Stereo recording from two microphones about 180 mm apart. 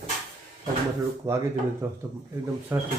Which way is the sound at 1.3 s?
15° right (ahead or behind).